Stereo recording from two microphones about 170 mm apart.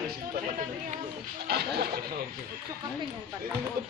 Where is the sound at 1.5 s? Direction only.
70° right (ahead or behind).